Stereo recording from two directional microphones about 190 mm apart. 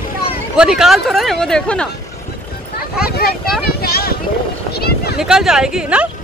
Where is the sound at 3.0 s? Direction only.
55° left (ahead or behind).